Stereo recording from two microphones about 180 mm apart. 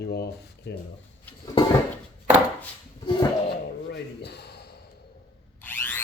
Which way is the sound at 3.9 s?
65° left (ahead or behind).